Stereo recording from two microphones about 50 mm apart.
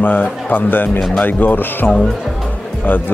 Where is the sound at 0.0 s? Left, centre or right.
Left.